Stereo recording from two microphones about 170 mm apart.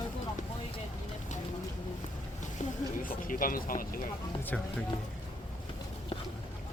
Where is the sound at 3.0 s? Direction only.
55° left (ahead or behind).